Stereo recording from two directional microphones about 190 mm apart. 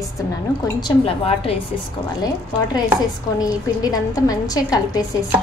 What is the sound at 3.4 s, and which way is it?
A woman's voice, 20° left (ahead or behind).